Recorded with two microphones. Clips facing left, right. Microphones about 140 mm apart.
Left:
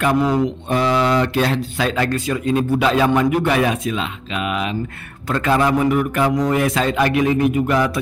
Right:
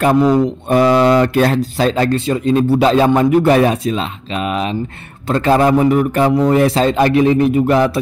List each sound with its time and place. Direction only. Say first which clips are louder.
0.1 s speech: right 7 dB; 35° right (ahead or behind)
0.7 s speech: right 8 dB; 50° right (ahead or behind); by 8.0 s 30° right (ahead or behind)